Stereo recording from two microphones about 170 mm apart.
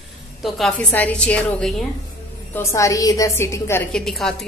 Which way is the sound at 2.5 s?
15° left (ahead or behind).